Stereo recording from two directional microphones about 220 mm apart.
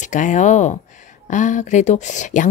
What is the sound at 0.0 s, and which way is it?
Speech, 35° left (ahead or behind).